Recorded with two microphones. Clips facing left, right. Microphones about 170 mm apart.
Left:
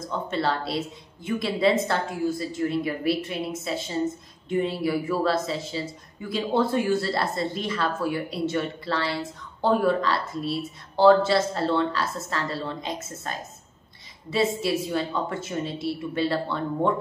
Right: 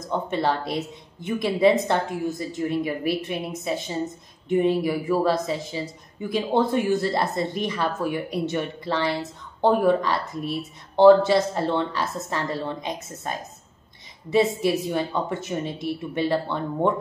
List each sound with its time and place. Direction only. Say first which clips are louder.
0.0 s speech: right 2 dB; 15° right (ahead or behind)